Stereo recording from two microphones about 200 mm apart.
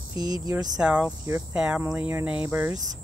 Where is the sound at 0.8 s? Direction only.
5° right (ahead or behind).